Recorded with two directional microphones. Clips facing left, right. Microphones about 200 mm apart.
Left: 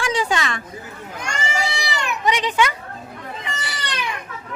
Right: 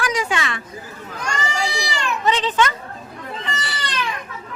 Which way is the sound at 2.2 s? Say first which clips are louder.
Even; 15° left (ahead or behind).